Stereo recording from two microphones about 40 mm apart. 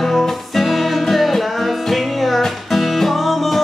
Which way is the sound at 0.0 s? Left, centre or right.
Centre.